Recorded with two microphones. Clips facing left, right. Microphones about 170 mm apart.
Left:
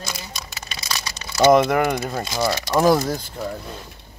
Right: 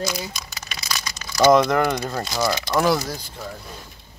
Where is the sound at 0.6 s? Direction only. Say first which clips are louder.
Left 1 dB; 30° left (ahead or behind).